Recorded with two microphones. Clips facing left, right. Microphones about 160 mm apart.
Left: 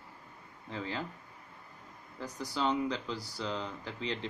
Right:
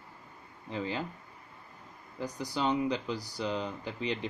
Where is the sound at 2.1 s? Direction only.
15° right (ahead or behind).